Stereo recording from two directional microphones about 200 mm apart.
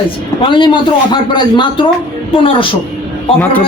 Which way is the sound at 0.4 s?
25° left (ahead or behind).